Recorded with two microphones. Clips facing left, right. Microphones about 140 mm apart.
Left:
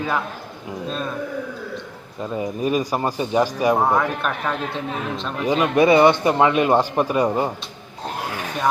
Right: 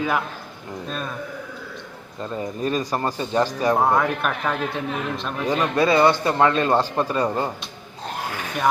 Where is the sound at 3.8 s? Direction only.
Centre (ahead or behind).